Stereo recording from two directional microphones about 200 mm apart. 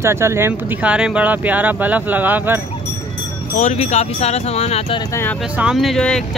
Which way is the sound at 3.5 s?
35° left (ahead or behind).